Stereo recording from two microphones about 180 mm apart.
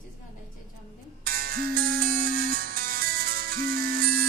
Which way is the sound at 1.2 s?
55° right (ahead or behind).